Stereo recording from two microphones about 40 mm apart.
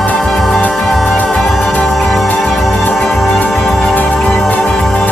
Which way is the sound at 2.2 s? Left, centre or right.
Left.